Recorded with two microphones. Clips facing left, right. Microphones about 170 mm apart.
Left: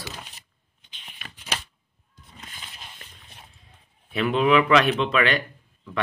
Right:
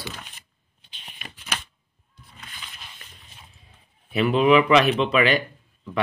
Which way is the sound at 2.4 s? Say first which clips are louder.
Even; 25° left (ahead or behind).